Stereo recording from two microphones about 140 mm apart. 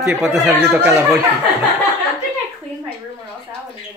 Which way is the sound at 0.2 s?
Centre (ahead or behind).